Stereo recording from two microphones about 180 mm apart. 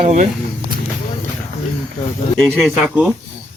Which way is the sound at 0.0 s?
55° right (ahead or behind).